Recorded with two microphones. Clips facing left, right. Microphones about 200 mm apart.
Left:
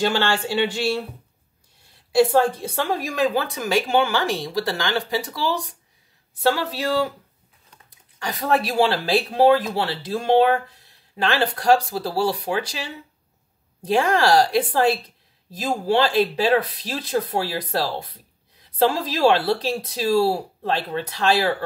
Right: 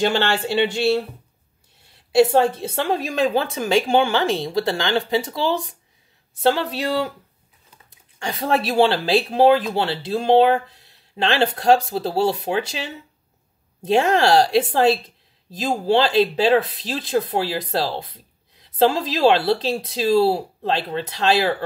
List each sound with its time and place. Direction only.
0.0 s speech: 20° right (ahead or behind)
2.3 s speech: 25° right (ahead or behind)
8.2 s speech: 25° right (ahead or behind)